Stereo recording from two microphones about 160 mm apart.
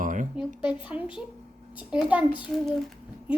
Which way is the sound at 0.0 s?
55° right (ahead or behind).